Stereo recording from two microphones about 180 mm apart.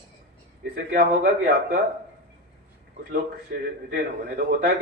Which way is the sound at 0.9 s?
60° right (ahead or behind).